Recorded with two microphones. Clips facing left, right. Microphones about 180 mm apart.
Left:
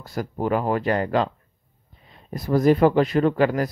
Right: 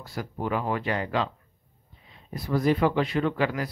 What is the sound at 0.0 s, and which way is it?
Speech, 45° left (ahead or behind).